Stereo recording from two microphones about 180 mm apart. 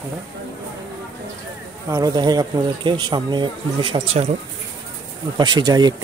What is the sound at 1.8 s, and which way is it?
Speech, 20° right (ahead or behind).